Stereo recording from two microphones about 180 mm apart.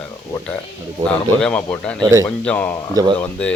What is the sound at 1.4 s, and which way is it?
Speech, 5° left (ahead or behind).